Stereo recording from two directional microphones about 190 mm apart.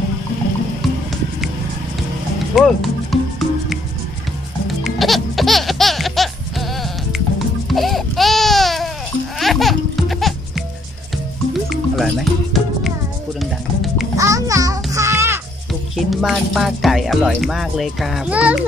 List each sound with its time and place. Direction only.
2.5 s music: centre (ahead or behind)
7.7 s a sound: centre (ahead or behind)
9.4 s music: centre (ahead or behind)
14.1 s music: 15° right (ahead or behind)
16.0 s speech: centre (ahead or behind)